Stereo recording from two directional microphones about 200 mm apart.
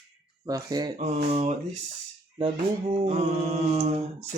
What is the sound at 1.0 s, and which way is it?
Mantra, 35° right (ahead or behind).